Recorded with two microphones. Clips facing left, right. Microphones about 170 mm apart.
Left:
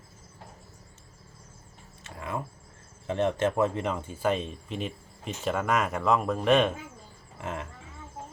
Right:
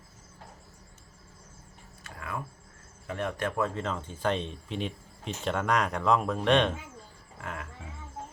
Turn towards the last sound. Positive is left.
turn(degrees=25)  # may be behind; listen again after turning